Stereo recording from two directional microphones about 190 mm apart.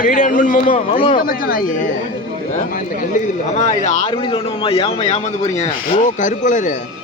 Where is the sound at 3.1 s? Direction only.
40° left (ahead or behind).